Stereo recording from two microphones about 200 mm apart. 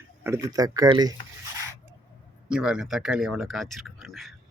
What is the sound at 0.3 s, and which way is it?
Speech, 15° right (ahead or behind).